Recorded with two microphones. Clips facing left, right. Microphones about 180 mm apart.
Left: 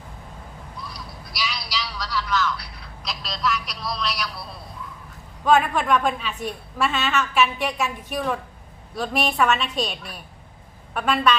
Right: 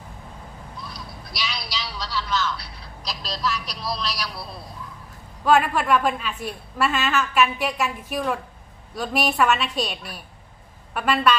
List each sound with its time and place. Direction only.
0.9 s a sound: 25° right (ahead or behind)
3.1 s speech: 35° right (ahead or behind)
5.5 s a woman's voice: 5° right (ahead or behind)